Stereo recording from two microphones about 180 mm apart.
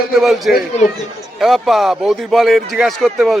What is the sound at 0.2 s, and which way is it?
Speech, centre (ahead or behind).